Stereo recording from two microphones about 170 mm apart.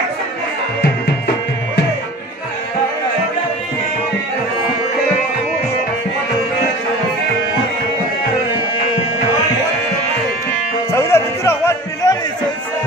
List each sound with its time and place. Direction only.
10.9 s music: 15° left (ahead or behind)